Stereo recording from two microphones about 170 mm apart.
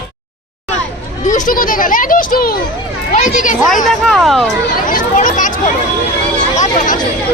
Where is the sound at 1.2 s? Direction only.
50° left (ahead or behind).